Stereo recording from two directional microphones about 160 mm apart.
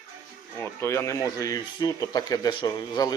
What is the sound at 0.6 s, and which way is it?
Speech, 15° left (ahead or behind).